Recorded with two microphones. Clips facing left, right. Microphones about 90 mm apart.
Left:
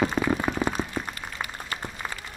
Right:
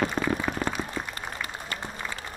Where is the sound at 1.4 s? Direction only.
35° left (ahead or behind).